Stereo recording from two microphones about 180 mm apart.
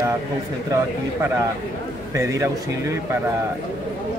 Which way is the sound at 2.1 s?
15° right (ahead or behind).